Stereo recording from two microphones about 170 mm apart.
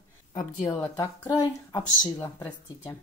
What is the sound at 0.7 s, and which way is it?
Speech, 20° left (ahead or behind).